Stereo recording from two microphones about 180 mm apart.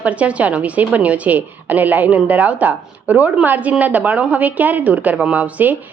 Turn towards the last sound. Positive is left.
turn(degrees=-10)  # may be behind; listen again after turning